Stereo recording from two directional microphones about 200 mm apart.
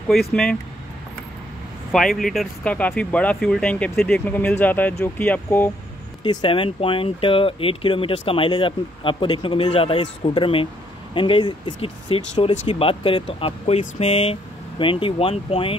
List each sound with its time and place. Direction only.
0.1 s speech: centre (ahead or behind)
1.9 s speech: centre (ahead or behind)
6.2 s speech: 25° left (ahead or behind)